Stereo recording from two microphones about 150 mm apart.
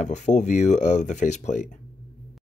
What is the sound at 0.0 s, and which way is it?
Speech, 50° left (ahead or behind).